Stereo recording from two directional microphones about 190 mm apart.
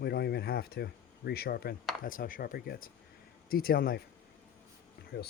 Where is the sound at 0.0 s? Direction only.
60° left (ahead or behind).